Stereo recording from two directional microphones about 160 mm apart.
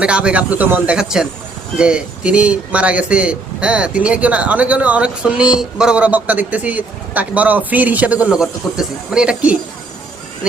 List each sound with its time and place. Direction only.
0.0 s speech: 5° right (ahead or behind)